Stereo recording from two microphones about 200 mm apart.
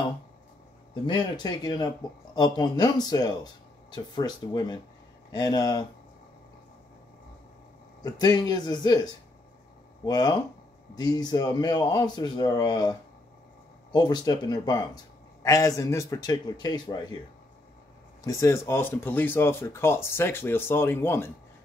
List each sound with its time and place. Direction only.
1.0 s speech: 20° left (ahead or behind)
8.0 s speech: 20° left (ahead or behind)
13.9 s speech: 20° left (ahead or behind)
18.2 s speech: 15° left (ahead or behind)